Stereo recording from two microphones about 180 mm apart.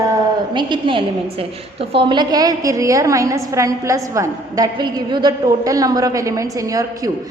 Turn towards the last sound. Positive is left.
turn(degrees=-20)  # may be behind; listen again after turning